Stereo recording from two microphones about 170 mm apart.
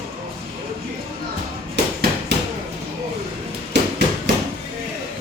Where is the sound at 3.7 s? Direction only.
90° right.